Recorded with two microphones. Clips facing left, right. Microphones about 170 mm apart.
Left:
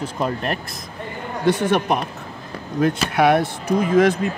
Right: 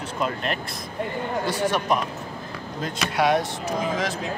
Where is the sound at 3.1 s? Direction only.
60° left (ahead or behind).